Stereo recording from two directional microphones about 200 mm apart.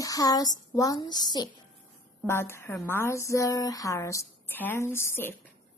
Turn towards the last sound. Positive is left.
turn(degrees=10)  # may be behind; listen again after turning